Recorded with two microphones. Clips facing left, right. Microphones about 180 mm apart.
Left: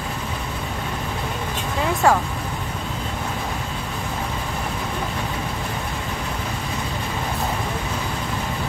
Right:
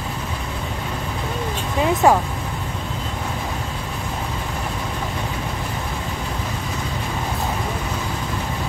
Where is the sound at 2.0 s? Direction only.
15° right (ahead or behind).